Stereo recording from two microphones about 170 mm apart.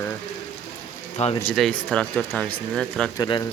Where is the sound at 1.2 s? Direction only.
40° left (ahead or behind).